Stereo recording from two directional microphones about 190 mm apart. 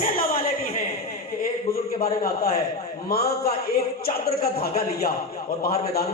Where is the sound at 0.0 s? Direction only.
50° left (ahead or behind).